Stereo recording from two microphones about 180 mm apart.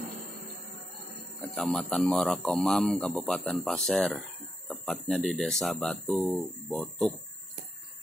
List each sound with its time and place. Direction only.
1.5 s speech: centre (ahead or behind)